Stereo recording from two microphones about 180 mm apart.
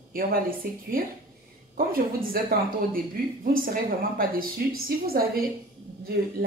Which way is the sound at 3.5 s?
50° right (ahead or behind).